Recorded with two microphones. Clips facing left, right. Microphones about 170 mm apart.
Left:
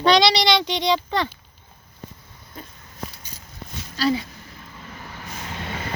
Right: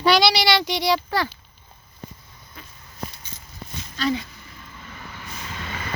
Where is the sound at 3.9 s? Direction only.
35° left (ahead or behind).